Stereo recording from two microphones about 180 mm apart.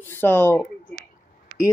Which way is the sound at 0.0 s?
10° left (ahead or behind).